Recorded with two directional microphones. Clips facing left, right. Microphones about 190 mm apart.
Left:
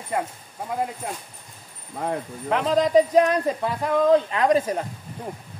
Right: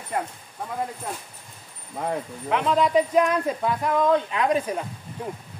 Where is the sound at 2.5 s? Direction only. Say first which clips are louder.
Left 2 dB; 35° left (ahead or behind).